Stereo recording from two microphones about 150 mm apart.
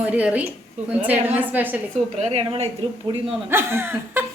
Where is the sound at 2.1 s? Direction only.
45° right (ahead or behind).